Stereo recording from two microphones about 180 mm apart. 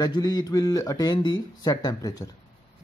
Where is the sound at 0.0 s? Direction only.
20° left (ahead or behind).